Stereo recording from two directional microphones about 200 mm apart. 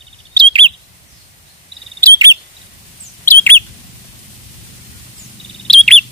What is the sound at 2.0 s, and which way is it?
Bird, 15° right (ahead or behind).